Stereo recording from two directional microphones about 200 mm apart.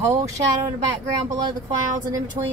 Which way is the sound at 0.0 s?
15° right (ahead or behind).